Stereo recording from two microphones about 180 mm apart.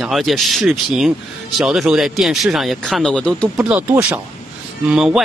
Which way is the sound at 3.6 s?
10° right (ahead or behind).